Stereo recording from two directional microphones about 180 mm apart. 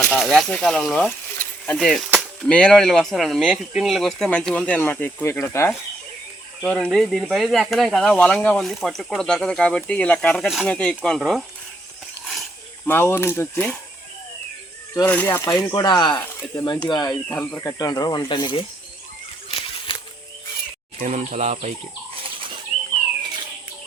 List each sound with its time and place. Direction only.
0.1 s speech: centre (ahead or behind)
2.0 s a sound: 5° right (ahead or behind)
2.5 s speech: 5° left (ahead or behind)
12.2 s a sound: centre (ahead or behind)
12.9 s speech: 10° left (ahead or behind)
15.0 s speech: 10° left (ahead or behind)
17.3 s speech: 10° left (ahead or behind); by 18.6 s 25° left (ahead or behind)
19.5 s a sound: 30° left (ahead or behind)
21.0 s speech: 45° right (ahead or behind)